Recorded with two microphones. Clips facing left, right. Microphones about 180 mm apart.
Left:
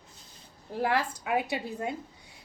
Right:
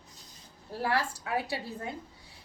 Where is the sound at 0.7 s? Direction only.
20° left (ahead or behind).